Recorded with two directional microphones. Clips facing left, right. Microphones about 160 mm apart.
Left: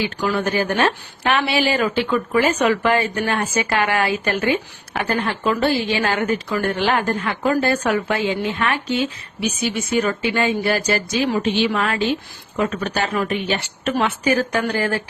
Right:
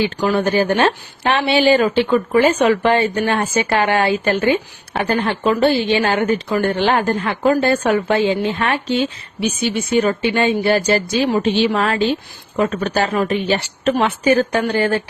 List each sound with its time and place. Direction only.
0.0 s speech: 30° right (ahead or behind)